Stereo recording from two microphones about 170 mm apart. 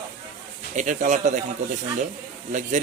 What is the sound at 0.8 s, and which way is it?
Speech, 45° right (ahead or behind).